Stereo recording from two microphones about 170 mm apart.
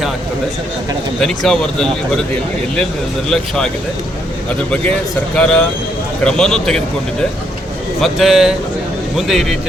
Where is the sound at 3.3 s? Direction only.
5° left (ahead or behind).